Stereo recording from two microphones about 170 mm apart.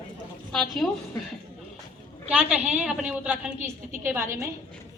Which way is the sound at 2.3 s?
5° right (ahead or behind).